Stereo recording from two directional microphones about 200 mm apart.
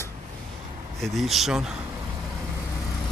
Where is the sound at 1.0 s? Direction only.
Centre (ahead or behind).